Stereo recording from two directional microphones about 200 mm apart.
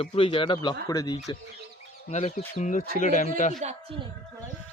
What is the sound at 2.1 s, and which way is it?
Speech, 35° left (ahead or behind).